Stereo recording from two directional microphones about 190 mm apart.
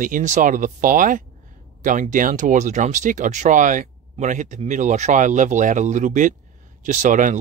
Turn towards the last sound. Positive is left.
turn(degrees=-40)  # may be behind; listen again after turning